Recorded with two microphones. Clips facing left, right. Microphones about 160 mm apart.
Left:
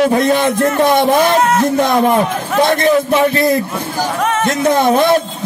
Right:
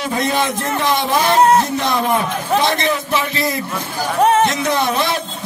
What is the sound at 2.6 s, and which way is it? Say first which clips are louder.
Speech: left 6 dB; 50° left (ahead or behind).